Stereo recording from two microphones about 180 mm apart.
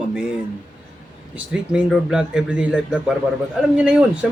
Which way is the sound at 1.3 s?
5° right (ahead or behind).